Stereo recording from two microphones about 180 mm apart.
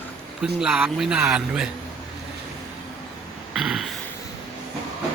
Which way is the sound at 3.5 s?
5° right (ahead or behind).